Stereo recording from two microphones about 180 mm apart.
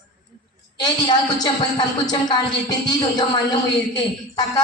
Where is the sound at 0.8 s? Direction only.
25° left (ahead or behind).